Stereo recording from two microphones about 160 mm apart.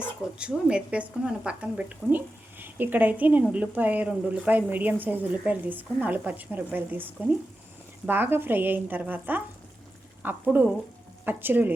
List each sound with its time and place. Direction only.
0.3 s a woman's voice: 5° right (ahead or behind)